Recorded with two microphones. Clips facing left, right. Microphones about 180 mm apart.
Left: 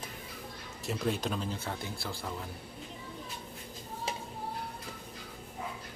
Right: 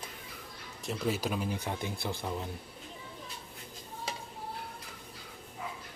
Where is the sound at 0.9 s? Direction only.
5° right (ahead or behind); by 2.4 s 20° right (ahead or behind).